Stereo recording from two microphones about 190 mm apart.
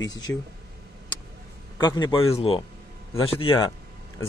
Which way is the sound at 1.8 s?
25° left (ahead or behind).